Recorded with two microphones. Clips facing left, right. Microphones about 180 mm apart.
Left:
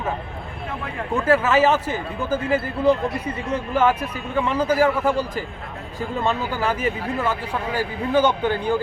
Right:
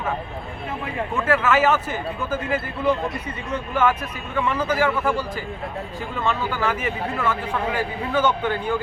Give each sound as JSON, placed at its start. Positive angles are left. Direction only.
{"t": 1.1, "sound": "a man's voice", "side_deg": 35}
{"t": 6.5, "sound": "a man's voice", "side_deg": 35}